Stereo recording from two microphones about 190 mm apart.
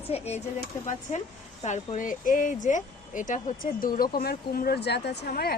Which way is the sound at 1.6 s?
40° left (ahead or behind).